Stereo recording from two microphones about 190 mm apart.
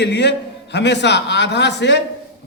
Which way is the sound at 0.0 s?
65° left (ahead or behind).